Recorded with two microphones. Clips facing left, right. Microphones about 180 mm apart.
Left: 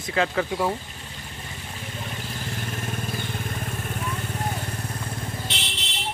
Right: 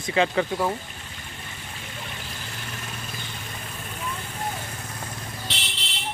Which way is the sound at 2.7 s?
50° left (ahead or behind).